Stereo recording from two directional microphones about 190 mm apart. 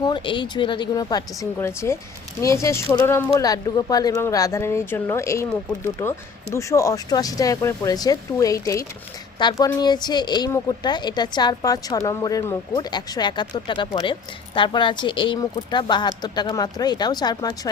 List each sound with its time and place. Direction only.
0.0 s a woman's voice: 25° left (ahead or behind)